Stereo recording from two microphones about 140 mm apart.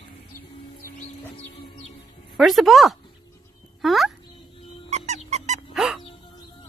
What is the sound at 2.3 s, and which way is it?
A woman's voice, centre (ahead or behind).